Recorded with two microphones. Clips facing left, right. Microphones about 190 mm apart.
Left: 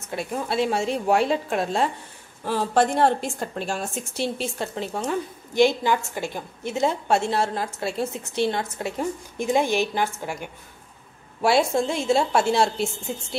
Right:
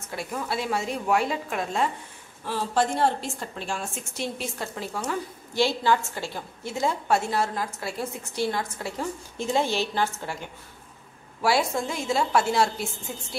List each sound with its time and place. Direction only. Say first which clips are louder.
0.1 s a woman's voice: left 4 dB; 25° left (ahead or behind)
2.4 s a woman's voice: left 4 dB; 55° left (ahead or behind); by 10.5 s 15° left (ahead or behind)
11.4 s a woman's voice: left 4 dB; 25° left (ahead or behind)